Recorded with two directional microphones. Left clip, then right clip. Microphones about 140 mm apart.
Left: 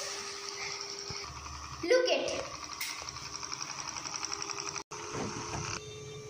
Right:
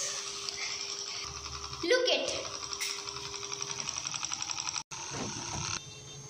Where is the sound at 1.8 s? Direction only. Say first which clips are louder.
Even; centre (ahead or behind).